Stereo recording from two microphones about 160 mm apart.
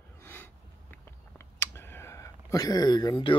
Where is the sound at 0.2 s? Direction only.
15° left (ahead or behind).